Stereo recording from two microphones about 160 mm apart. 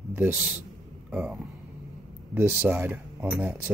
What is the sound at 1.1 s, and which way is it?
Speech, centre (ahead or behind).